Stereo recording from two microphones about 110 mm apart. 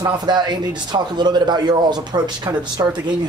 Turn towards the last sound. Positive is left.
turn(degrees=-40)  # may be behind; listen again after turning